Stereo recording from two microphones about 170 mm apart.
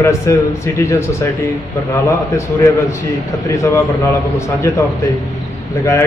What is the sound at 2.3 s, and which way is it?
A man's voice, 15° left (ahead or behind).